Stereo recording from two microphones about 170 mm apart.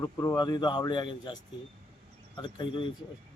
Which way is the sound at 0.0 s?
20° left (ahead or behind).